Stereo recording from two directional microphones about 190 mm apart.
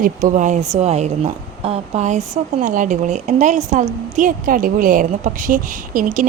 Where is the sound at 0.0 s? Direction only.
45° right (ahead or behind).